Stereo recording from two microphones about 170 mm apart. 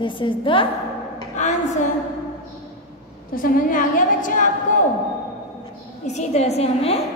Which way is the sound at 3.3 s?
55° left (ahead or behind).